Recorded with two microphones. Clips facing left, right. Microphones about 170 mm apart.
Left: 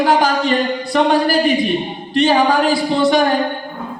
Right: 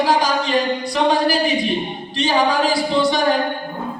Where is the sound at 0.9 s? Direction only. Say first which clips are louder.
Left 4 dB; 55° left (ahead or behind).